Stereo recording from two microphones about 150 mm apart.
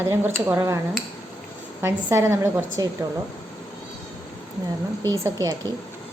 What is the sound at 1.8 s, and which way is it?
Speech, 15° right (ahead or behind).